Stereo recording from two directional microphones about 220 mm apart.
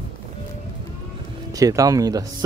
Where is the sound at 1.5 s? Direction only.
15° right (ahead or behind).